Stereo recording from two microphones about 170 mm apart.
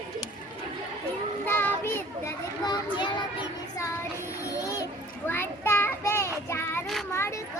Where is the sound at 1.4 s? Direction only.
10° left (ahead or behind).